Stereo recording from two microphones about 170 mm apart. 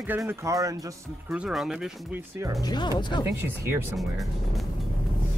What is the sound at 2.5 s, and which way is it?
Speech, 25° left (ahead or behind).